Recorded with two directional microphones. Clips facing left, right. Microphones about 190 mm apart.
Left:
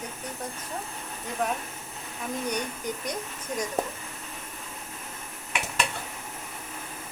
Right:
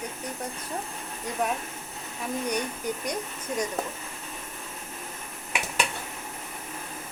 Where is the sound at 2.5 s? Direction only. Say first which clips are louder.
Right 2 dB; 10° right (ahead or behind).